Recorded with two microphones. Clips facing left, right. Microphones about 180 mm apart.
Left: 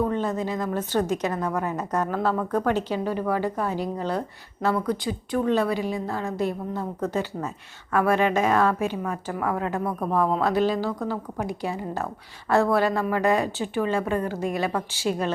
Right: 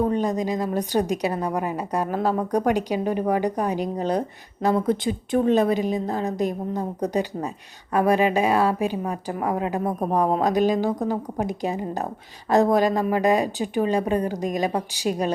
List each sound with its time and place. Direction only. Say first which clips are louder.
0.0 s a woman's voice: right 3 dB; 15° right (ahead or behind)